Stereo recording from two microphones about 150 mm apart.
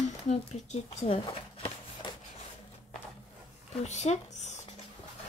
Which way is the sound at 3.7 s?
50° left (ahead or behind).